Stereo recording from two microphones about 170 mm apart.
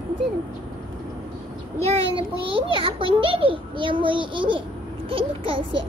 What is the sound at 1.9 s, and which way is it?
A child's voice, 35° right (ahead or behind).